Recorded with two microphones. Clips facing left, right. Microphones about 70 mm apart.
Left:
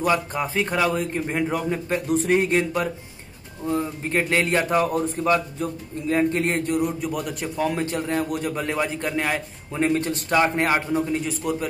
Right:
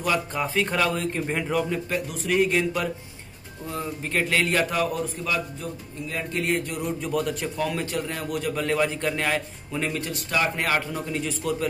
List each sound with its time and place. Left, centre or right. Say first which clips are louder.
0.0 s speech: left 3 dB; left
2.0 s a man's voice: left 4 dB; left
5.1 s a man's voice: left 7 dB; left
6.8 s speech: left 1 dB; centre
7.8 s a man's voice: left 5 dB; left
8.6 s speech: right 1 dB; centre
9.8 s a man's voice: left 6 dB; left